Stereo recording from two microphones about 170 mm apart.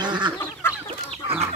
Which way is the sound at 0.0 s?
25° right (ahead or behind).